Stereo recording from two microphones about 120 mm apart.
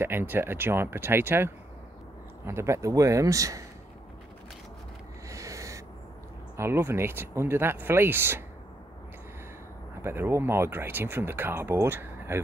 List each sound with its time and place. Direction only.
0.0 s speech: 20° right (ahead or behind)
5.3 s owl: 25° right (ahead or behind)
6.5 s speech: 20° right (ahead or behind)
10.0 s speech: 20° right (ahead or behind)